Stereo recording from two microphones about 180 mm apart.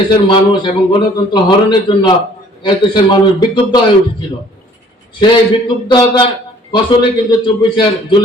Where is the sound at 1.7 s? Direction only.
25° left (ahead or behind).